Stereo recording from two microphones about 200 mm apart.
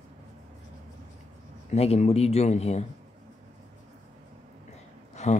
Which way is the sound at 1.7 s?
30° left (ahead or behind).